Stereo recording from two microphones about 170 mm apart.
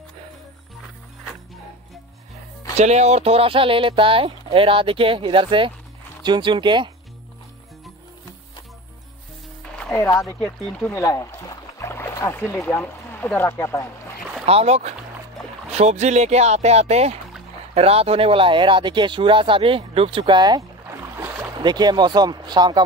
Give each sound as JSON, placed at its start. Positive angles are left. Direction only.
{"t": 2.8, "sound": "speech", "side_deg": -40}
{"t": 9.9, "sound": "speech", "side_deg": 20}
{"t": 11.0, "sound": "boat", "side_deg": 20}
{"t": 12.5, "sound": "speech", "side_deg": 10}
{"t": 14.4, "sound": "speech", "side_deg": -35}